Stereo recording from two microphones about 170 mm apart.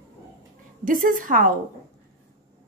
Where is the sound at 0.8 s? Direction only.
55° right (ahead or behind).